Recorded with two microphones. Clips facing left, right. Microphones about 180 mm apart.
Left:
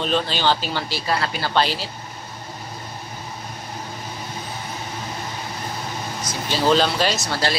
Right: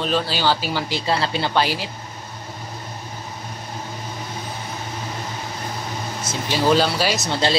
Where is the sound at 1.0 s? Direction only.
25° right (ahead or behind).